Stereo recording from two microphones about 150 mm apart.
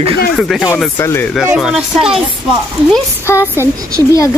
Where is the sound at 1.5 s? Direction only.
5° right (ahead or behind).